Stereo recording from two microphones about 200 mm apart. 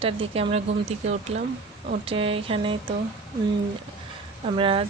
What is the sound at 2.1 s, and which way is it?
Speech, 25° right (ahead or behind).